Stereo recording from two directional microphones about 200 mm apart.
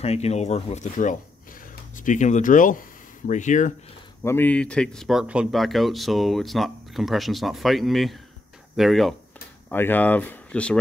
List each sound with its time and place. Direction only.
0.0 s speech: 30° left (ahead or behind)
4.2 s speech: 10° left (ahead or behind)